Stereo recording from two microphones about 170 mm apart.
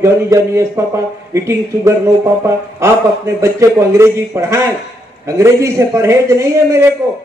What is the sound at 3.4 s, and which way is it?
A man's voice, 15° right (ahead or behind).